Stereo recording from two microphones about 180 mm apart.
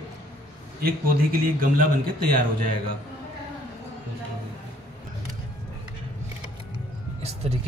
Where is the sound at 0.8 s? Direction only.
55° right (ahead or behind).